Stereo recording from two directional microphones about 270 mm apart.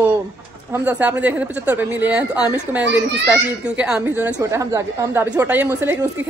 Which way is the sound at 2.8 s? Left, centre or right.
Right.